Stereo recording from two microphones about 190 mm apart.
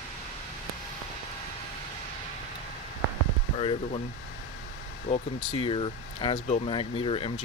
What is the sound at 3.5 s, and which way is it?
Speech, 30° left (ahead or behind).